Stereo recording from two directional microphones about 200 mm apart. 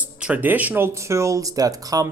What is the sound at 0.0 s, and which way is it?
Speech, 5° right (ahead or behind).